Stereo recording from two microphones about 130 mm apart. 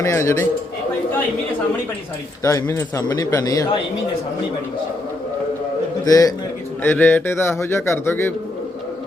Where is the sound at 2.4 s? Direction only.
25° left (ahead or behind).